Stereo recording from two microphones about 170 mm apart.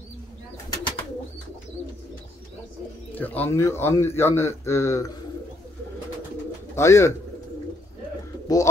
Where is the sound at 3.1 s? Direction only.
10° left (ahead or behind).